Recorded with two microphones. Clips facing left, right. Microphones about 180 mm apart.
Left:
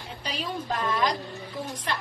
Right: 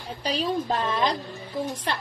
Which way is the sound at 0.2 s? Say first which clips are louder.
Right 7 dB; 35° right (ahead or behind).